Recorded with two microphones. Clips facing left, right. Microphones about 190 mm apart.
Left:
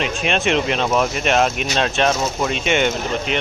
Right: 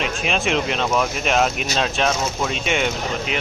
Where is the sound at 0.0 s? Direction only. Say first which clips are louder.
Left 2 dB; centre (ahead or behind).